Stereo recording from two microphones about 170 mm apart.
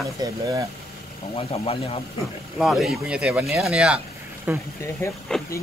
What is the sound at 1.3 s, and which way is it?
Speech, 35° left (ahead or behind).